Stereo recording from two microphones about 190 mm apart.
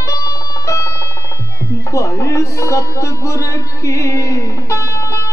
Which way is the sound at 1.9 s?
15° left (ahead or behind).